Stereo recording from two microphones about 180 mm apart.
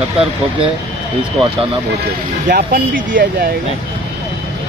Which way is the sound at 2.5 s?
55° right (ahead or behind).